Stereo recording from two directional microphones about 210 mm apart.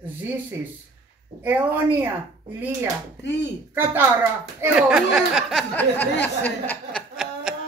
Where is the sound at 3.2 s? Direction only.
55° left (ahead or behind).